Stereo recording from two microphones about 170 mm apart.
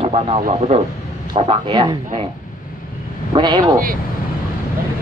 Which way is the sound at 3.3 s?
25° right (ahead or behind).